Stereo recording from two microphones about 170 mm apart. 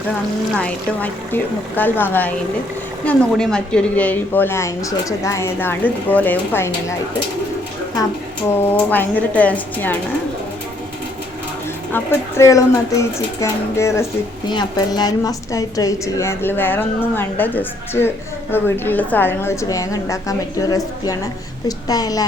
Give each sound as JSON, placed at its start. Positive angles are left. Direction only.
{"t": 0.5, "sound": "speech", "side_deg": 5}
{"t": 8.6, "sound": "speech", "side_deg": 10}
{"t": 11.9, "sound": "a woman's voice", "side_deg": 15}